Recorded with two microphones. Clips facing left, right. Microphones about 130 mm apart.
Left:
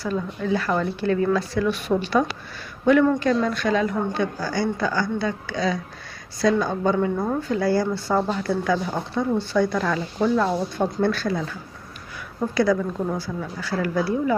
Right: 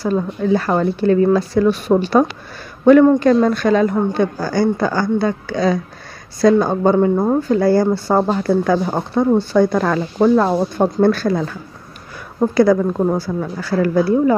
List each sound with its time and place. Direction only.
0.0 s speech: 35° right (ahead or behind)